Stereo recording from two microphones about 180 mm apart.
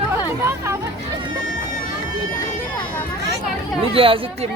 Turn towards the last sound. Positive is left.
turn(degrees=-30)  # may be behind; listen again after turning